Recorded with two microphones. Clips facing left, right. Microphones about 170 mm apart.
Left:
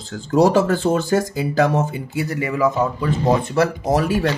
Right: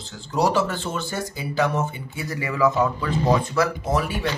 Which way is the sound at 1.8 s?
25° left (ahead or behind).